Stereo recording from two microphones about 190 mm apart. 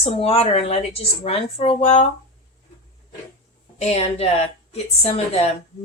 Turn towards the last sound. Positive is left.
turn(degrees=35)  # may be behind; listen again after turning